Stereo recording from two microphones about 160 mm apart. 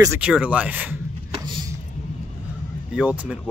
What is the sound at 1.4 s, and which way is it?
Vehicle, 25° right (ahead or behind).